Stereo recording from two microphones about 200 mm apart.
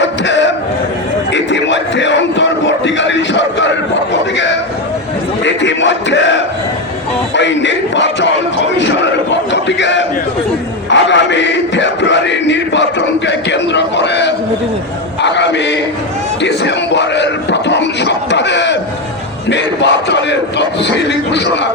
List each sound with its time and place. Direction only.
0.0 s a sound: 65° left (ahead or behind)
1.3 s a man's voice: 65° left (ahead or behind)
5.5 s a man's voice: 65° left (ahead or behind)
10.8 s chant: 65° left (ahead or behind)
15.2 s a man's voice: 60° left (ahead or behind)
16.4 s a sound: 60° left (ahead or behind)
19.5 s a man's voice: 60° left (ahead or behind)